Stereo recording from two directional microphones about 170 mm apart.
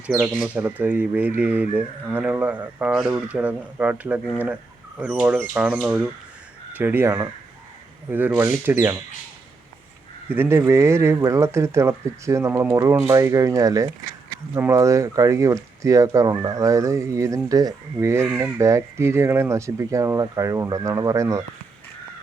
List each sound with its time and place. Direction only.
0.1 s speech: 10° right (ahead or behind)
10.2 s speech: 15° right (ahead or behind)